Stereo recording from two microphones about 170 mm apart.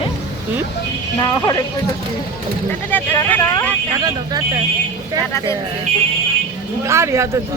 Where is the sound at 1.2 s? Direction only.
20° left (ahead or behind).